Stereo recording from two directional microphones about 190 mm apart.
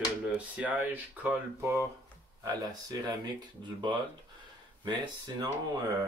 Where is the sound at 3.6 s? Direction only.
25° right (ahead or behind).